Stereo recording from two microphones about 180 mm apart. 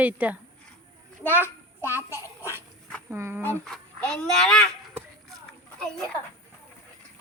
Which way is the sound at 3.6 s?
5° left (ahead or behind).